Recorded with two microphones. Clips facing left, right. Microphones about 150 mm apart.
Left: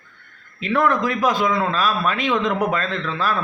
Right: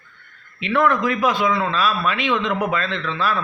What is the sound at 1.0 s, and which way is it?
A man's voice, 40° left (ahead or behind).